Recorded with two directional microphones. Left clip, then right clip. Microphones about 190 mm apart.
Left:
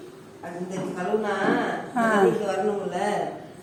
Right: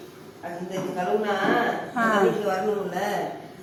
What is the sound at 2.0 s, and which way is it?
Speech, 25° left (ahead or behind).